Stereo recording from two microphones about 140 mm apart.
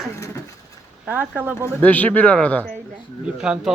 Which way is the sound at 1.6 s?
10° left (ahead or behind).